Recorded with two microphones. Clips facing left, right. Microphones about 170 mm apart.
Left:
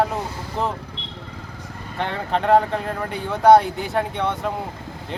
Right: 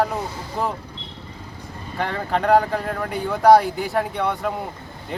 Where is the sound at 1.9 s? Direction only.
Centre (ahead or behind).